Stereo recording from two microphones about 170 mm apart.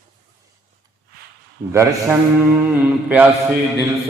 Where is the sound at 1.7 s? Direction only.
15° right (ahead or behind).